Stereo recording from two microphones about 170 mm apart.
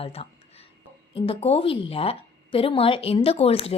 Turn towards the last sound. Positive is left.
turn(degrees=35)  # may be behind; listen again after turning